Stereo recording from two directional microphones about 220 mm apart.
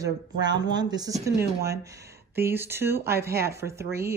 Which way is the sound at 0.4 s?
20° right (ahead or behind).